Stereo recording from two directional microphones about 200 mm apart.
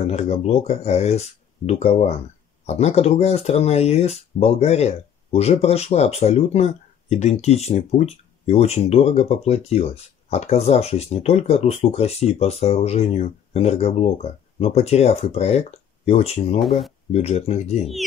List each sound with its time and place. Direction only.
0.0 s speech: 30° left (ahead or behind)
16.5 s speech: centre (ahead or behind)
17.1 s speech: 30° left (ahead or behind)